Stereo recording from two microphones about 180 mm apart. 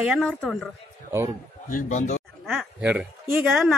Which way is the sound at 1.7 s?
45° left (ahead or behind).